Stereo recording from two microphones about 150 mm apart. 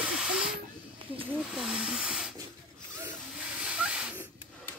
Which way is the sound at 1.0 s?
35° right (ahead or behind).